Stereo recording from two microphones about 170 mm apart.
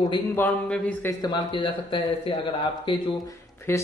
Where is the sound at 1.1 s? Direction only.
25° left (ahead or behind).